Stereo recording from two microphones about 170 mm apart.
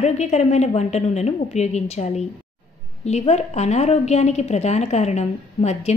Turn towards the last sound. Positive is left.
turn(degrees=40)  # may be behind; listen again after turning